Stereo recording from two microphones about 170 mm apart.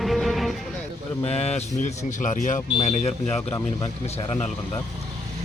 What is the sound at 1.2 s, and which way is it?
A man's voice, 40° left (ahead or behind).